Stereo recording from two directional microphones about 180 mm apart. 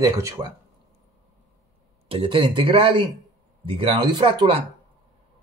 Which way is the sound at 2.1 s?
30° right (ahead or behind).